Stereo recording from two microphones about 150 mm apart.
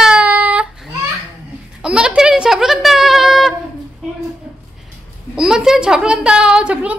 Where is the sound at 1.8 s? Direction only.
5° right (ahead or behind).